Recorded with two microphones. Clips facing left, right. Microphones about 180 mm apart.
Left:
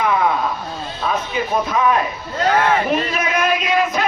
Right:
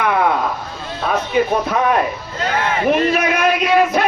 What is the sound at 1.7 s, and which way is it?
Speech, 60° right (ahead or behind).